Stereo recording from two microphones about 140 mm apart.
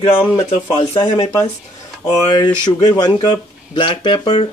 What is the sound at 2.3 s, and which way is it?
Speech, 30° left (ahead or behind).